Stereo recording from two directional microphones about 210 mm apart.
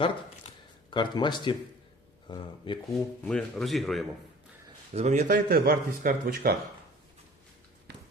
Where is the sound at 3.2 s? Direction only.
5° left (ahead or behind).